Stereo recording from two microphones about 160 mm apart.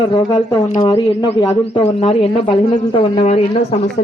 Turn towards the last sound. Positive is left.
turn(degrees=45)  # may be behind; listen again after turning